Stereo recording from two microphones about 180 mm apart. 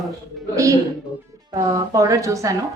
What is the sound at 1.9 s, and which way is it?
Speech, 20° right (ahead or behind).